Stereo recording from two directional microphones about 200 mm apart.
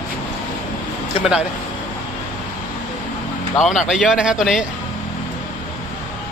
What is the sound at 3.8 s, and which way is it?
Speech, 5° right (ahead or behind).